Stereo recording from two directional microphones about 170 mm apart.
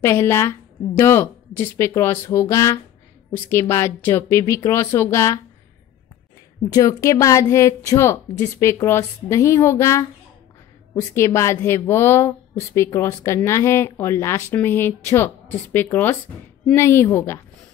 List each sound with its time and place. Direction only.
0.0 s a woman's voice: 15° left (ahead or behind)
6.7 s a woman's voice: 20° left (ahead or behind)